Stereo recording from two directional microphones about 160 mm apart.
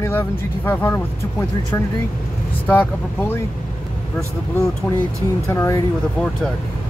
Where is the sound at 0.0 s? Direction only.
15° left (ahead or behind).